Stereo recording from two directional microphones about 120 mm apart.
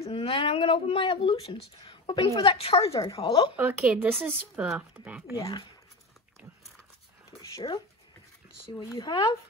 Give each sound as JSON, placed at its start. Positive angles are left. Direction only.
{"t": 0.0, "sound": "a woman's voice", "side_deg": 50}
{"t": 3.5, "sound": "speech", "side_deg": -10}
{"t": 7.6, "sound": "a woman's voice", "side_deg": 40}
{"t": 8.9, "sound": "speech", "side_deg": 40}